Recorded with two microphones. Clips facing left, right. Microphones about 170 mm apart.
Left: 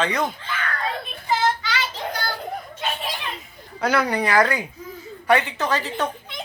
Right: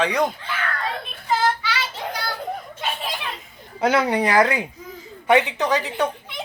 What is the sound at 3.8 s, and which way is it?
A woman's voice, 25° right (ahead or behind).